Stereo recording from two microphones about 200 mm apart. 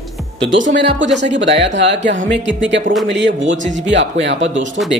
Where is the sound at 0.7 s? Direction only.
65° right (ahead or behind).